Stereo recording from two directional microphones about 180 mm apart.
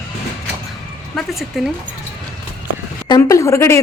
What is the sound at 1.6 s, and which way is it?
Speech, 5° right (ahead or behind).